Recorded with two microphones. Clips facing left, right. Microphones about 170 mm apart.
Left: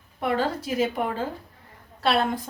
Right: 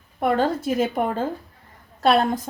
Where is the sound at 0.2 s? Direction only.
50° right (ahead or behind).